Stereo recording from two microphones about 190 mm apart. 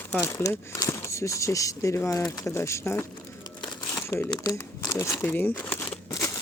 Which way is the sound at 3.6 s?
15° left (ahead or behind).